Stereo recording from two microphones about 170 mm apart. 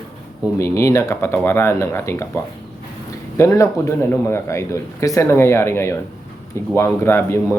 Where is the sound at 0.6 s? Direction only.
15° left (ahead or behind).